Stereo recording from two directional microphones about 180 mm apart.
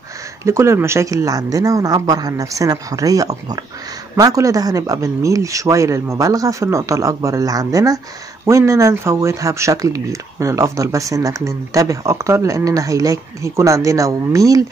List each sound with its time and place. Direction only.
0.5 s speech: 15° right (ahead or behind)